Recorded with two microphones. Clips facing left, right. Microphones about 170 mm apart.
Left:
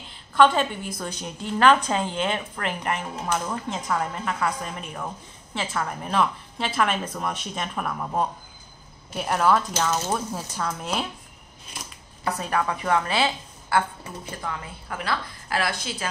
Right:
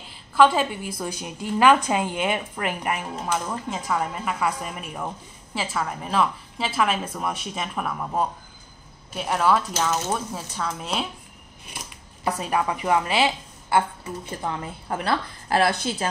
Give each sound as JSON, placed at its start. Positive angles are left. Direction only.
{"t": 0.1, "sound": "a woman's voice", "side_deg": -5}
{"t": 12.3, "sound": "a woman's voice", "side_deg": -15}
{"t": 14.4, "sound": "a woman's voice", "side_deg": -30}